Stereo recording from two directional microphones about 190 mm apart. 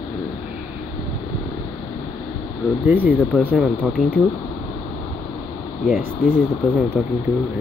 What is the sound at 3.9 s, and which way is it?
Speech, 5° left (ahead or behind).